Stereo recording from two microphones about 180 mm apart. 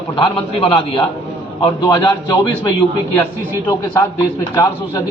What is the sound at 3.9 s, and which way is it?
A man's voice, 15° left (ahead or behind).